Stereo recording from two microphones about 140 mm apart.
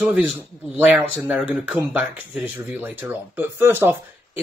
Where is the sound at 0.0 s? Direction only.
Centre (ahead or behind).